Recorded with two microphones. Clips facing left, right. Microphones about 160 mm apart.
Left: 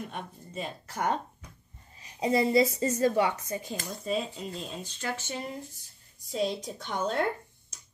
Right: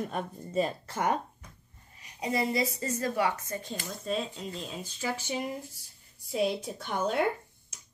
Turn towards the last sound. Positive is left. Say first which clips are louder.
# right 1 dB
turn(degrees=-10)  # may be behind; listen again after turning